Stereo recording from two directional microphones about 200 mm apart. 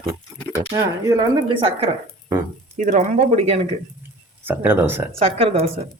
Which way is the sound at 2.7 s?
35° right (ahead or behind).